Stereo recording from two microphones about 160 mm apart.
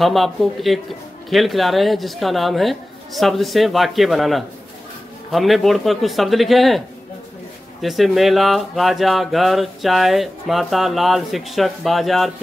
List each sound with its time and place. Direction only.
0.0 s speech: centre (ahead or behind)
7.8 s speech: centre (ahead or behind)